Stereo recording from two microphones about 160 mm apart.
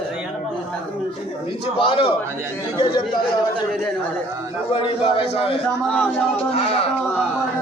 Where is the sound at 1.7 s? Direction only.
30° left (ahead or behind).